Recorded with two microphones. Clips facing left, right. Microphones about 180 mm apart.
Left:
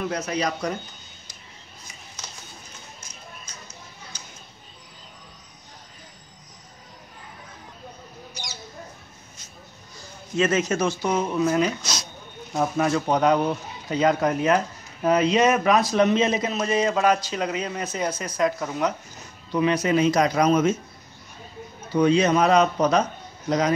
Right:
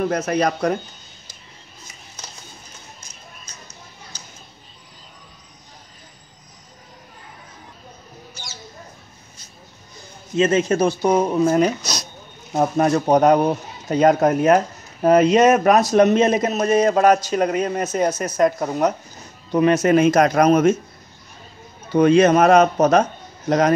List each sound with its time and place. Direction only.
0.0 s speech: 50° right (ahead or behind)
9.9 s a sound: 25° right (ahead or behind)
10.7 s speech: 35° right (ahead or behind); by 20.7 s 55° right (ahead or behind)
21.9 s speech: 50° right (ahead or behind)